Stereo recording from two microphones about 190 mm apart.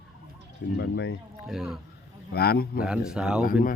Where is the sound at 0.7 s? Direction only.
65° left (ahead or behind).